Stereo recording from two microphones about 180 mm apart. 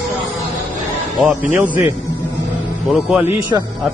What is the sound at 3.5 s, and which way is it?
Speech, 20° right (ahead or behind).